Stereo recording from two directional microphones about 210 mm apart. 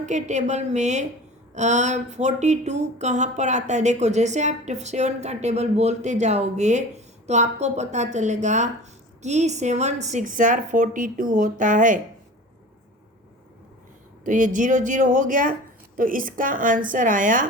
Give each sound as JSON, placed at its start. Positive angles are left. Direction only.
{"t": 0.0, "sound": "speech", "side_deg": -35}
{"t": 14.3, "sound": "speech", "side_deg": -40}